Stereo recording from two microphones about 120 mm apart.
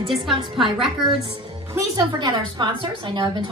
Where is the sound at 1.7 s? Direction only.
25° right (ahead or behind).